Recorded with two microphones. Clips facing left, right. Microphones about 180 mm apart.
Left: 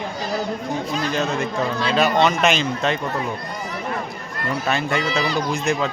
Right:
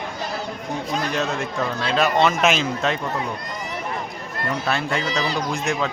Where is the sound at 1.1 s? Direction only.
Centre (ahead or behind).